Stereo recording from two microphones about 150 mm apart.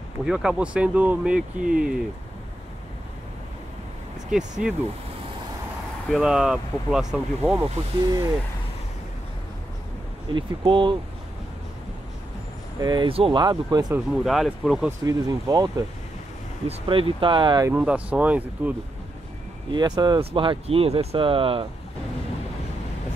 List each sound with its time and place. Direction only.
0.2 s speech: 5° right (ahead or behind)
4.3 s speech: 5° right (ahead or behind)
6.0 s speech: centre (ahead or behind)
10.3 s speech: 35° right (ahead or behind)
12.8 s speech: 30° right (ahead or behind)
14.1 s speech: centre (ahead or behind)
14.9 s speech: 20° right (ahead or behind)
16.6 s speech: 35° right (ahead or behind)
17.6 s speech: 10° right (ahead or behind)
19.7 s speech: 30° right (ahead or behind)